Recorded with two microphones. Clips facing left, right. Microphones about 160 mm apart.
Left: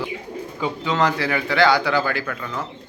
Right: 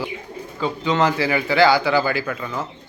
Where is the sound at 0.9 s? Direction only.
Centre (ahead or behind).